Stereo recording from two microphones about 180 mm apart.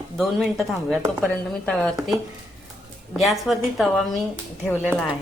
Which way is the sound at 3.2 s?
Centre (ahead or behind).